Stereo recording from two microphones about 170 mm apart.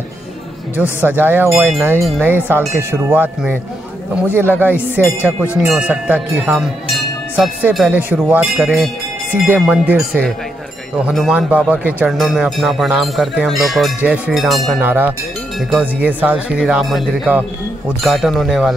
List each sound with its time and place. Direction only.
1.0 s speech: 10° right (ahead or behind)
14.8 s speech: 10° right (ahead or behind)